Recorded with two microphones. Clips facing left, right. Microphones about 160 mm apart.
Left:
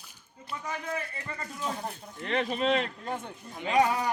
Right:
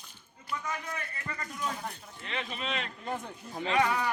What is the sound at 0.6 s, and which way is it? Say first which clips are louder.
Speech: left 3 dB; 30° left (ahead or behind).